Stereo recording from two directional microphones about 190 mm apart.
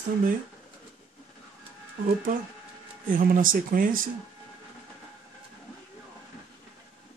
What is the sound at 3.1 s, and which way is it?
Speech, 45° right (ahead or behind).